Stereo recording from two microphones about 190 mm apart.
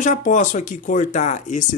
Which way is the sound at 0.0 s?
40° left (ahead or behind).